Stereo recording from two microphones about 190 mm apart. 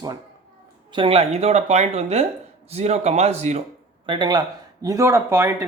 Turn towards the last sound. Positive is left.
turn(degrees=-15)  # may be behind; listen again after turning